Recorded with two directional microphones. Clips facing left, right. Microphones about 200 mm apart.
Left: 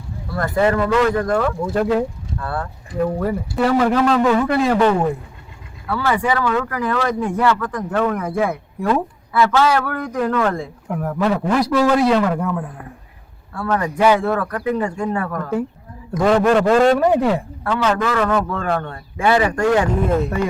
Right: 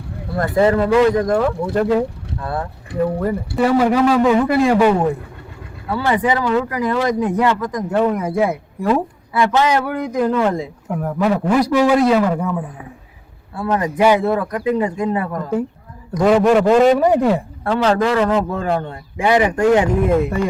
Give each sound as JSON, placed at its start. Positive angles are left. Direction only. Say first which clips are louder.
{"t": 0.3, "sound": "a man's voice", "louder": "right 2 dB", "side_deg": -25}
{"t": 1.7, "sound": "speech", "louder": "right 1 dB", "side_deg": 0}
{"t": 2.4, "sound": "speech", "louder": "right 2 dB", "side_deg": -15}
{"t": 3.0, "sound": "a man's voice", "louder": "right 1 dB", "side_deg": 0}
{"t": 10.8, "sound": "speech", "louder": "right 1 dB", "side_deg": -5}
{"t": 11.9, "sound": "speech", "louder": "right 1 dB", "side_deg": 0}
{"t": 13.5, "sound": "speech", "louder": "right 1 dB", "side_deg": -15}
{"t": 16.1, "sound": "speech", "louder": "right 2 dB", "side_deg": 0}
{"t": 17.6, "sound": "a man's voice", "louder": "right 5 dB", "side_deg": -30}